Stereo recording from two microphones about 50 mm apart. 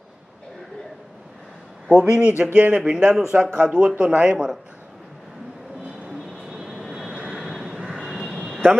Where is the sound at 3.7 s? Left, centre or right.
Right.